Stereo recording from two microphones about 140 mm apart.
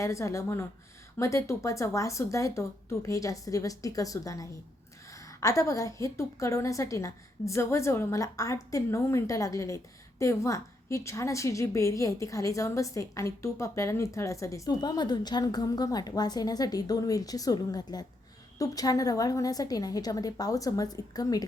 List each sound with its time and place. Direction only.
0.0 s a woman's voice: 20° left (ahead or behind)